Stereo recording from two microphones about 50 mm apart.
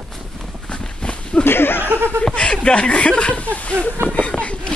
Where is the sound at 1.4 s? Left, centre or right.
Left.